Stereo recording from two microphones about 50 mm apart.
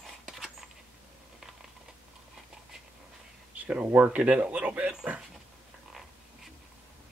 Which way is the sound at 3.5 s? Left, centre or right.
Right.